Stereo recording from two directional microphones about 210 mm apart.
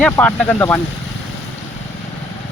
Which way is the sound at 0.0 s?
5° left (ahead or behind).